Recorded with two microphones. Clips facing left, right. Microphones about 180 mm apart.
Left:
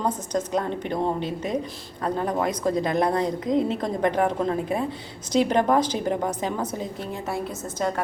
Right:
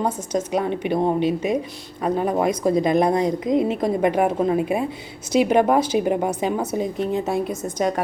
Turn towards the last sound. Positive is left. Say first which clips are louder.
# right 5 dB
turn(degrees=-15)  # may be behind; listen again after turning